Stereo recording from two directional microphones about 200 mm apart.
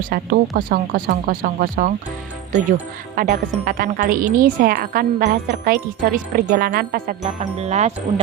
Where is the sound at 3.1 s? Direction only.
40° right (ahead or behind).